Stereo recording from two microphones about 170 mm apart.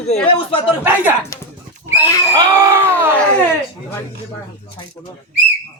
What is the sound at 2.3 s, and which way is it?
Screaming, 25° right (ahead or behind).